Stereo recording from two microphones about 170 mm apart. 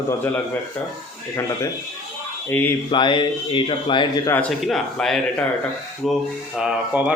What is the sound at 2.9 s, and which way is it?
Speech, 25° left (ahead or behind).